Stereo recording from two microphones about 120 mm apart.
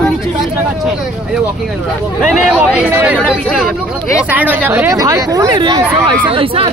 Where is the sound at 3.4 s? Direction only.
10° left (ahead or behind).